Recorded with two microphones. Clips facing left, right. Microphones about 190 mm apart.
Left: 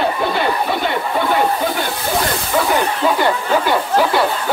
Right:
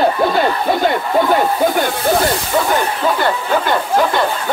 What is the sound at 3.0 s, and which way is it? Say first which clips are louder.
Speech: even; 10° left (ahead or behind).